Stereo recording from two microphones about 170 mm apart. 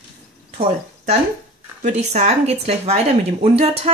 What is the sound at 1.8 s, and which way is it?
Speech, 40° right (ahead or behind).